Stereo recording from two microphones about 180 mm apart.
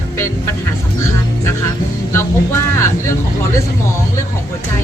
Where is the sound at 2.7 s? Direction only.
15° left (ahead or behind).